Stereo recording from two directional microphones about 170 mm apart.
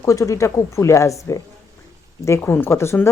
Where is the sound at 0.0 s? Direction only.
20° left (ahead or behind).